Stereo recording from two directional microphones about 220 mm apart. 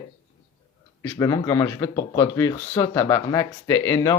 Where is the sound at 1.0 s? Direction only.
10° left (ahead or behind).